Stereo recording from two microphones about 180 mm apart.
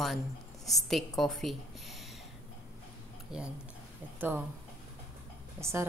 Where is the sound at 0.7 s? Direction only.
Centre (ahead or behind).